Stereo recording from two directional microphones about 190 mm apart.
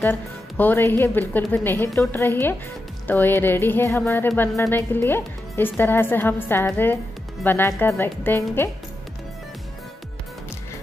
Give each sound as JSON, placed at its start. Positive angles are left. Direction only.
{"t": 0.0, "sound": "a woman's voice", "side_deg": 10}